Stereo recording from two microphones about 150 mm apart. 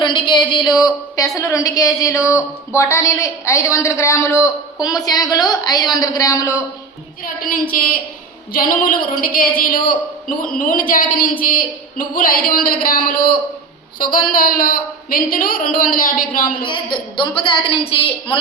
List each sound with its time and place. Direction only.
0.0 s a woman's voice: 30° left (ahead or behind)
7.7 s a woman's voice: 65° left (ahead or behind)
16.6 s a woman's voice: 35° left (ahead or behind)